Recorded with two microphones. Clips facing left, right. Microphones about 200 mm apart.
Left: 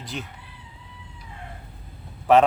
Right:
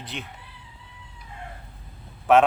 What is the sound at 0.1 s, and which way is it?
Speech, 40° left (ahead or behind).